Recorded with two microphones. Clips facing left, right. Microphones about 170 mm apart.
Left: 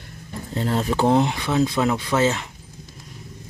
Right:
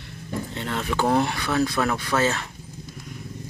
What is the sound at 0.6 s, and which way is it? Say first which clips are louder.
Speech: left 6 dB; 35° left (ahead or behind).